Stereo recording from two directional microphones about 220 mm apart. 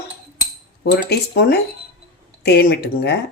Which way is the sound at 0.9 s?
50° left (ahead or behind).